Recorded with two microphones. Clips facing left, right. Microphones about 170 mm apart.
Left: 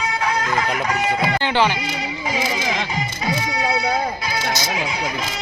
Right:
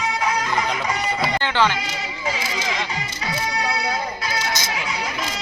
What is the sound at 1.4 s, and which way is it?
Music, 15° left (ahead or behind).